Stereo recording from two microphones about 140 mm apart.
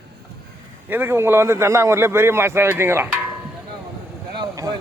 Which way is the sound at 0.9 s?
15° right (ahead or behind).